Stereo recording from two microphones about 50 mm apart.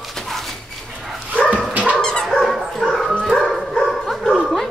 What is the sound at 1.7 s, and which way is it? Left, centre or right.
Dog, right.